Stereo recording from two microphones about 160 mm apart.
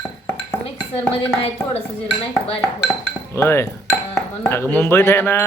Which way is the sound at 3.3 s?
15° left (ahead or behind).